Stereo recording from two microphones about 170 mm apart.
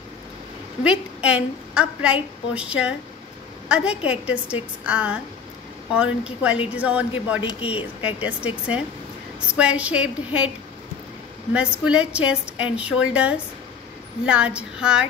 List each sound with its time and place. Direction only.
0.8 s a woman's voice: 5° right (ahead or behind)
7.4 s speech: 35° left (ahead or behind)
8.2 s a woman's voice: 10° right (ahead or behind)
11.5 s a woman's voice: 5° right (ahead or behind)